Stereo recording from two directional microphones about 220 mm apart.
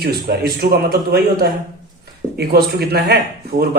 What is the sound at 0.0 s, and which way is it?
Speech, 45° right (ahead or behind).